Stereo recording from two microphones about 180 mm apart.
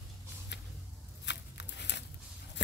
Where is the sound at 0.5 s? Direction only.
75° left (ahead or behind).